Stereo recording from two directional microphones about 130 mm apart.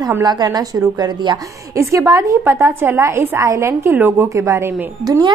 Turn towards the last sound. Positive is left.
turn(degrees=-30)  # may be behind; listen again after turning